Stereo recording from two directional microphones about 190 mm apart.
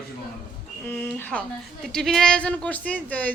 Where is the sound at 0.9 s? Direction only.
10° left (ahead or behind).